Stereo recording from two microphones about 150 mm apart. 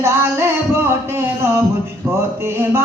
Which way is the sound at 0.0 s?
15° right (ahead or behind).